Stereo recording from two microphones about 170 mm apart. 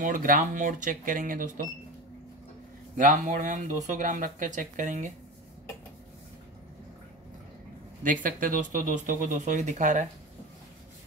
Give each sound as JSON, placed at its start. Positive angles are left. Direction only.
{"t": 0.0, "sound": "speech", "side_deg": -50}
{"t": 3.0, "sound": "speech", "side_deg": -50}
{"t": 8.0, "sound": "speech", "side_deg": -50}